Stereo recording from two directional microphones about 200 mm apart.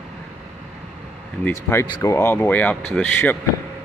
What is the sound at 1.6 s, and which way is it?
Speech, 15° left (ahead or behind).